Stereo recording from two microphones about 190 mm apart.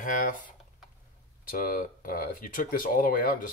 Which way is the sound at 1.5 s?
45° left (ahead or behind).